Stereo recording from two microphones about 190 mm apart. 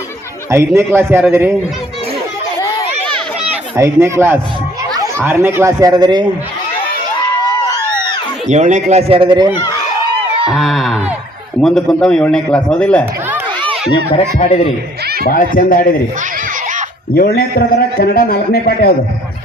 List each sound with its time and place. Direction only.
0.5 s speech: 15° right (ahead or behind)
2.6 s a sound: 15° left (ahead or behind)
3.5 s speech: 15° right (ahead or behind)
8.4 s speech: 40° right (ahead or behind)
9.5 s speech: 20° left (ahead or behind)
10.5 s a man's voice: centre (ahead or behind)
13.9 s speech: 30° left (ahead or behind)
15.0 s chuckle: 55° right (ahead or behind)
15.3 s a man's voice: 45° left (ahead or behind)
17.2 s a man's voice: 50° left (ahead or behind)